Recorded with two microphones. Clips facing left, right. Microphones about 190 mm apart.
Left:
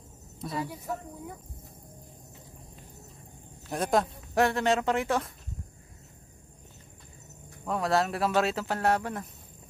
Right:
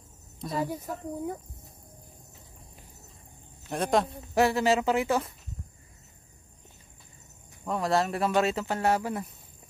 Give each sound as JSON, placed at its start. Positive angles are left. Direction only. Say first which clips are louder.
{"t": 0.7, "sound": "speech", "louder": "right 2 dB", "side_deg": -45}
{"t": 3.7, "sound": "speech", "louder": "right 1 dB", "side_deg": 0}
{"t": 7.6, "sound": "speech", "louder": "even", "side_deg": 0}